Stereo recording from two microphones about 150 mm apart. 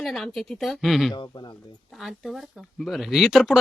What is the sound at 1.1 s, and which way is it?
Speech, 30° left (ahead or behind).